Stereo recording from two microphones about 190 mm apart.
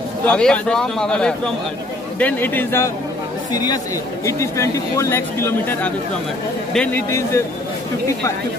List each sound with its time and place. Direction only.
0.3 s speech: 5° left (ahead or behind)
7.1 s speech: 15° left (ahead or behind)